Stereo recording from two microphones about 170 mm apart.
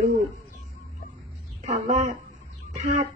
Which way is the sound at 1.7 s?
40° right (ahead or behind).